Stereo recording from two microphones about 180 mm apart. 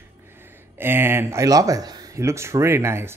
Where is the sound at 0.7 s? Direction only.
10° right (ahead or behind).